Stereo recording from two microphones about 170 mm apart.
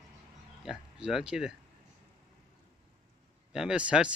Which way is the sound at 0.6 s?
5° right (ahead or behind).